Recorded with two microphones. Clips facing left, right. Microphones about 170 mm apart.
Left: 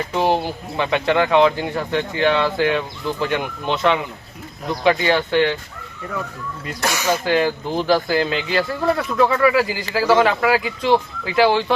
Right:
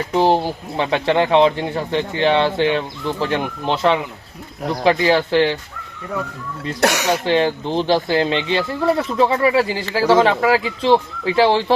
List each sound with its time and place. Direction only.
0.2 s speech: 30° right (ahead or behind)
6.8 s speech: 70° right (ahead or behind)
7.1 s speech: 25° right (ahead or behind)